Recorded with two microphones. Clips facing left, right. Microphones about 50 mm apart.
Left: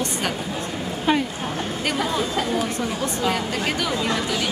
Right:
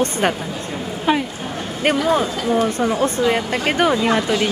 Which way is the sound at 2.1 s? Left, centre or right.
Right.